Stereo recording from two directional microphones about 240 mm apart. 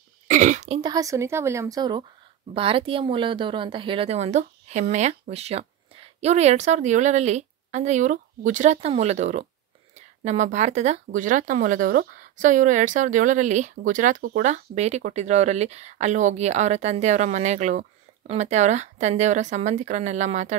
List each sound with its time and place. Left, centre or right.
0.3 s speech: right
0.7 s a woman's voice: centre